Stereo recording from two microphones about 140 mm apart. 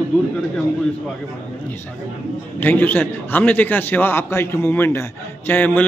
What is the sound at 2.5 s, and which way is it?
A man's voice, 15° left (ahead or behind).